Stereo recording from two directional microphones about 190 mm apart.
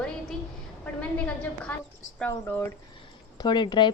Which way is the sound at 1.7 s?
10° left (ahead or behind).